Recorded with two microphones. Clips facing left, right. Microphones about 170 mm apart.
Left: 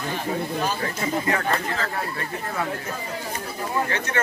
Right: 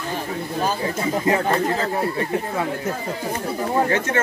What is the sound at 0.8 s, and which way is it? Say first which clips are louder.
Speech: right 4 dB; 25° right (ahead or behind).